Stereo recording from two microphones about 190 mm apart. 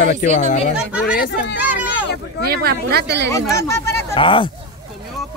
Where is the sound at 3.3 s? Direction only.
15° left (ahead or behind).